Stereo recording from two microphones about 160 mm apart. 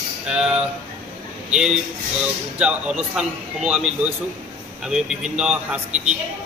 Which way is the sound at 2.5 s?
5° right (ahead or behind).